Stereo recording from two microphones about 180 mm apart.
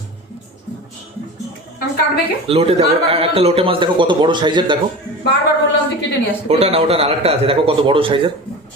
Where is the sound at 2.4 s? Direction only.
35° right (ahead or behind).